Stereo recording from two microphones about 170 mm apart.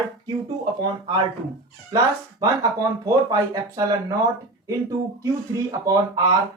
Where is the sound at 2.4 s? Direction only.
20° right (ahead or behind).